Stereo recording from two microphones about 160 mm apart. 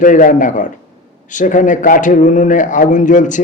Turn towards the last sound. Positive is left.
turn(degrees=50)  # may be behind; listen again after turning